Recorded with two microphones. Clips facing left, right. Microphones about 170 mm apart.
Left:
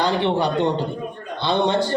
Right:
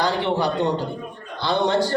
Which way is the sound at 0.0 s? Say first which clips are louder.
Left 2 dB; 20° left (ahead or behind).